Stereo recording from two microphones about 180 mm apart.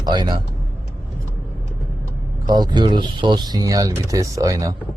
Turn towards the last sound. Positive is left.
turn(degrees=-20)  # may be behind; listen again after turning